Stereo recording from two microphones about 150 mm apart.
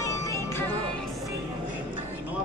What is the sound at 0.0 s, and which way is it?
Music, 20° left (ahead or behind).